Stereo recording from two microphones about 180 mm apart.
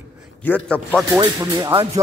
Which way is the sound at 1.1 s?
20° right (ahead or behind).